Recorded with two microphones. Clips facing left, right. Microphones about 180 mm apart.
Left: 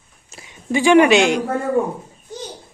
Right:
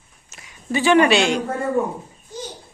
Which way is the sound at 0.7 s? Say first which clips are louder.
Left 3 dB; 15° left (ahead or behind).